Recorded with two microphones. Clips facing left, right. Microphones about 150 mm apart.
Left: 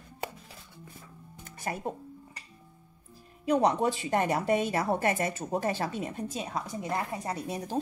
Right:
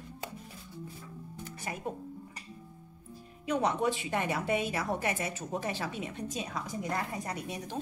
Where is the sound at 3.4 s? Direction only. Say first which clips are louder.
Left 4 dB; 40° left (ahead or behind).